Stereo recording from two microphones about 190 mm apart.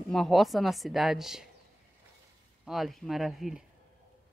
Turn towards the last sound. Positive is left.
turn(degrees=0)  # may be behind; listen again after turning